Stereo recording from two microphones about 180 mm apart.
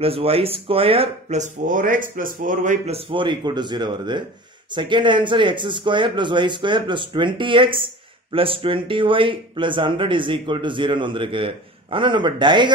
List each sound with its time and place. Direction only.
0.0 s speech: 30° right (ahead or behind)
3.1 s speech: 25° right (ahead or behind)